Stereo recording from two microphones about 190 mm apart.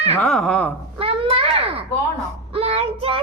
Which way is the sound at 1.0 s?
30° right (ahead or behind).